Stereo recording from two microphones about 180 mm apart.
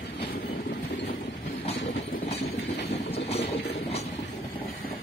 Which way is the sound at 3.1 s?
35° left (ahead or behind).